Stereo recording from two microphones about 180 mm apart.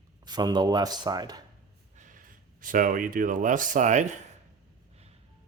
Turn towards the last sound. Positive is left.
turn(degrees=-40)  # may be behind; listen again after turning